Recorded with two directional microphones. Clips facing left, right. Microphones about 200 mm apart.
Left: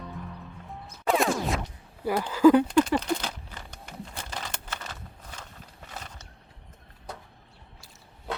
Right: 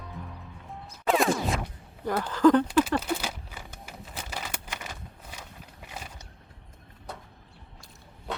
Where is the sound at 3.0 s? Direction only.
5° right (ahead or behind).